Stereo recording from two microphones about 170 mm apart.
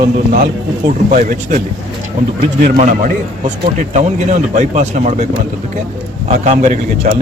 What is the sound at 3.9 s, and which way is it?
Speech, 40° right (ahead or behind).